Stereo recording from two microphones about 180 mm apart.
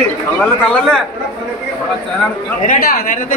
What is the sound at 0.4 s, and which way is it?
Speech, 5° left (ahead or behind).